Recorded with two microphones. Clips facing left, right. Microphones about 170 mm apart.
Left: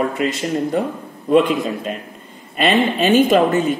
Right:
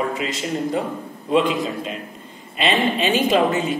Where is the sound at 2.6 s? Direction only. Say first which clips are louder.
Left 4 dB; 45° left (ahead or behind).